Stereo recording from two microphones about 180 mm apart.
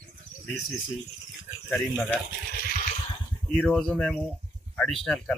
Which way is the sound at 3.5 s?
5° left (ahead or behind).